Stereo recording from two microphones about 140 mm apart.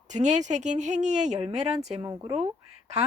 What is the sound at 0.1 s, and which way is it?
Speech, 55° right (ahead or behind).